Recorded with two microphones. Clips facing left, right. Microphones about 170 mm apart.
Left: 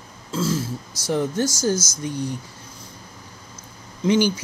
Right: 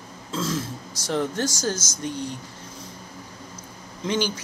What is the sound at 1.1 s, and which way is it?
Speech, 15° left (ahead or behind).